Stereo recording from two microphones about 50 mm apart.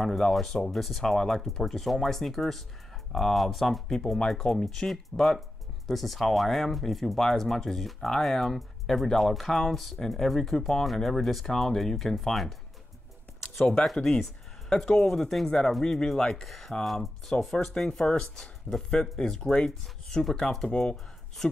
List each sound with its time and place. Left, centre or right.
0.0 s speech: centre
13.9 s speech: centre